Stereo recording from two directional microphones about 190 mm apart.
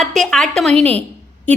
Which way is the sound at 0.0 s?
Centre (ahead or behind).